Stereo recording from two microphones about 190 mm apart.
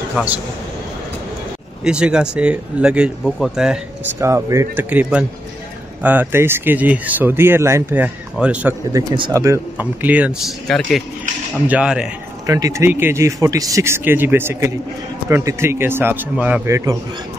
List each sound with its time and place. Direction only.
0.1 s a man's voice: 10° right (ahead or behind)
1.9 s speech: 5° right (ahead or behind)
4.2 s speech: 15° right (ahead or behind)
8.9 s speech: 20° right (ahead or behind); by 12.1 s 5° right (ahead or behind)
12.4 s speech: 20° right (ahead or behind)